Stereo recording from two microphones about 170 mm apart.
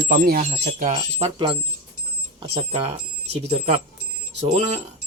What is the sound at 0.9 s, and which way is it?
Speech, 35° right (ahead or behind).